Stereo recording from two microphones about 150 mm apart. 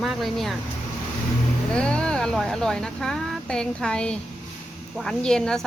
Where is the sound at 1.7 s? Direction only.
5° left (ahead or behind).